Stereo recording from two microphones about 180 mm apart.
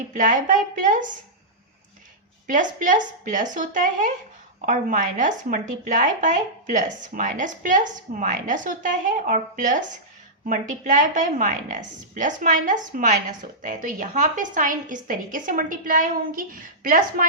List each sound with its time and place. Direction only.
0.2 s a woman's voice: 45° right (ahead or behind)
2.5 s a woman's voice: 50° right (ahead or behind)